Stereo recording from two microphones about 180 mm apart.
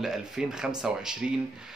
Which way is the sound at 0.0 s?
5° right (ahead or behind).